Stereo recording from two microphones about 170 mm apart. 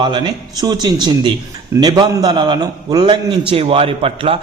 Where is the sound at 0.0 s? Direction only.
30° right (ahead or behind).